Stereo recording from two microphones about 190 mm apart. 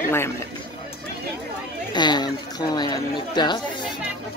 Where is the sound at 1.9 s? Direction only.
20° left (ahead or behind).